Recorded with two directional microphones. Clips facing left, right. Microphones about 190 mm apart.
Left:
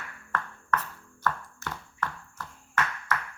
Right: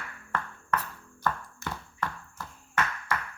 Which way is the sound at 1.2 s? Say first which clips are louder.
Even; 15° right (ahead or behind).